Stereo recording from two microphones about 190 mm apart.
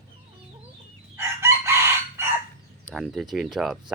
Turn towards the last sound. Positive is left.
turn(degrees=0)  # may be behind; listen again after turning